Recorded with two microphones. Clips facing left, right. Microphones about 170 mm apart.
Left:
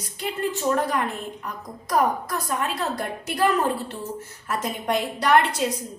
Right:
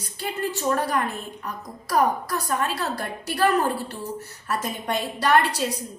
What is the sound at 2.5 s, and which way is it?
A woman's voice, 20° left (ahead or behind).